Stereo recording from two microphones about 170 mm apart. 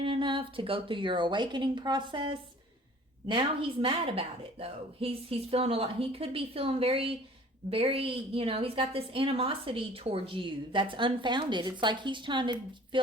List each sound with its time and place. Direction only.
0.0 s a woman's voice: 30° right (ahead or behind)